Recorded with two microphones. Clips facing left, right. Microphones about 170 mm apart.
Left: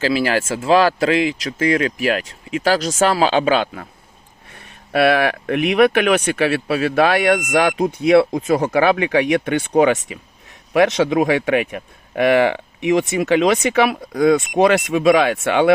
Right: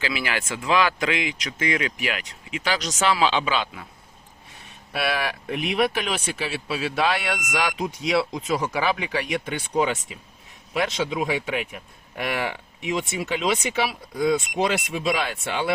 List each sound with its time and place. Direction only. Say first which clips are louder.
0.0 s speech: left 10 dB; 35° left (ahead or behind)
4.9 s speech: left 11 dB; 60° left (ahead or behind)